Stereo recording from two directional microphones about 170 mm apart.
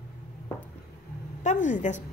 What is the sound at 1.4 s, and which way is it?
Speech, 45° left (ahead or behind).